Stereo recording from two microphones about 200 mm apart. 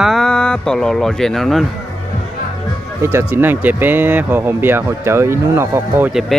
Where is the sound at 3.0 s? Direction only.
10° right (ahead or behind).